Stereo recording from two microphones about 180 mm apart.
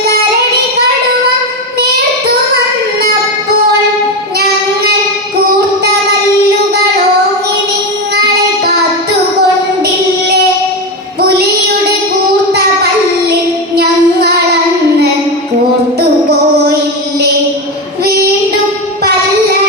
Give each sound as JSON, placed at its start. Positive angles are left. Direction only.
{"t": 13.7, "sound": "child singing", "side_deg": -60}